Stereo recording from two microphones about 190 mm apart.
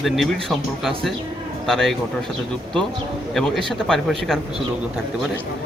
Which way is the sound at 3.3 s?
Centre (ahead or behind).